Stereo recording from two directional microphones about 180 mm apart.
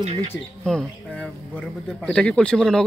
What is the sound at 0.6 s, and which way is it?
Speech, 5° left (ahead or behind).